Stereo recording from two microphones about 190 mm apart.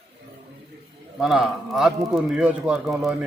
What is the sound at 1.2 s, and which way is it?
Speech, centre (ahead or behind).